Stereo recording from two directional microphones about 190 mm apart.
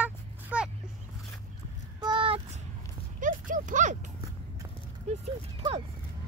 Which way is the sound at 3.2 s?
45° right (ahead or behind).